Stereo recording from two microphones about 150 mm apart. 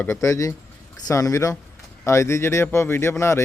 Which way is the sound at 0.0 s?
20° left (ahead or behind).